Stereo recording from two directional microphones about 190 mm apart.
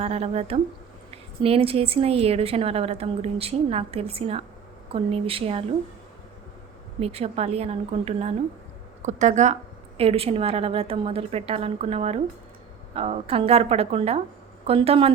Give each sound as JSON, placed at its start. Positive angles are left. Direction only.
{"t": 0.0, "sound": "a woman's voice", "side_deg": -35}
{"t": 7.0, "sound": "a woman's voice", "side_deg": -30}